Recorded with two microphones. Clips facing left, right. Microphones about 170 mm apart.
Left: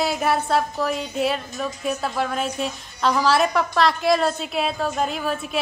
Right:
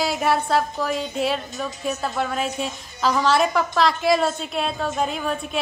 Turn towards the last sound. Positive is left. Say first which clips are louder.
# even
turn(degrees=0)  # may be behind; listen again after turning